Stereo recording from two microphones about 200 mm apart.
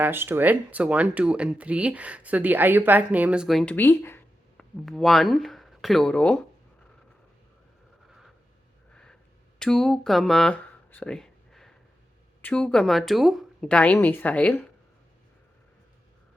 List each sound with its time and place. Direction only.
0.0 s speech: 10° right (ahead or behind)
9.6 s speech: 5° left (ahead or behind)